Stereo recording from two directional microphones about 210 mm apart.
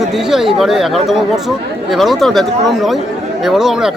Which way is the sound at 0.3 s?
Centre (ahead or behind).